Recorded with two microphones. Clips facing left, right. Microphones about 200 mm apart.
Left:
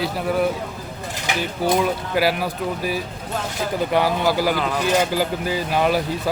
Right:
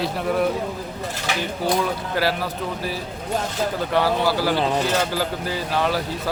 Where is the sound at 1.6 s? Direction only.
15° left (ahead or behind).